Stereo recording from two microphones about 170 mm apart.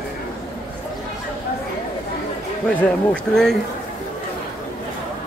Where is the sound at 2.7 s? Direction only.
5° left (ahead or behind).